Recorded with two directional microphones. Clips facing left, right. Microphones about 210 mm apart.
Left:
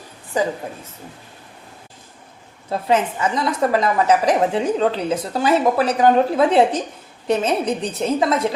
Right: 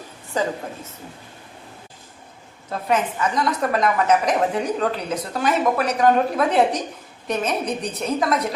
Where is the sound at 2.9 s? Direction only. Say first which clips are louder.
Left 2 dB; 25° left (ahead or behind).